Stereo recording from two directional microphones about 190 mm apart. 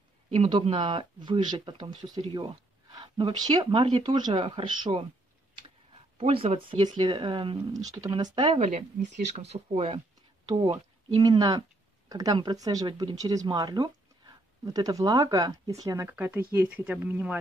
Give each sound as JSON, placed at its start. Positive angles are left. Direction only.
{"t": 0.3, "sound": "speech", "side_deg": -30}
{"t": 6.1, "sound": "speech", "side_deg": -30}